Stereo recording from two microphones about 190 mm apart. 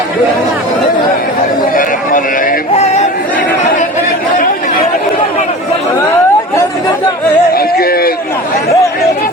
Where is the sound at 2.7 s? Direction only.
35° left (ahead or behind).